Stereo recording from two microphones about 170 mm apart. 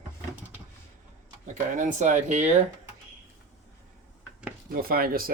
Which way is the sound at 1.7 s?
45° right (ahead or behind).